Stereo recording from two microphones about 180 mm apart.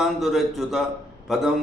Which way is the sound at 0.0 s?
Centre (ahead or behind).